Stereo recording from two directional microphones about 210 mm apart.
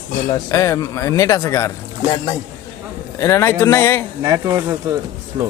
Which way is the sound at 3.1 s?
15° left (ahead or behind).